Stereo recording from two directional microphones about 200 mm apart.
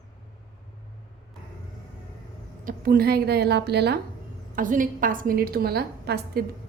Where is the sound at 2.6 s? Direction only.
45° right (ahead or behind).